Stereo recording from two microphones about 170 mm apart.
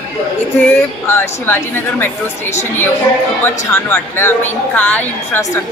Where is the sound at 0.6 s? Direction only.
15° left (ahead or behind).